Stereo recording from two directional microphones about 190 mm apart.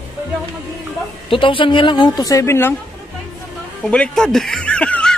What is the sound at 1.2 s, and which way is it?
A woman's voice, 30° left (ahead or behind).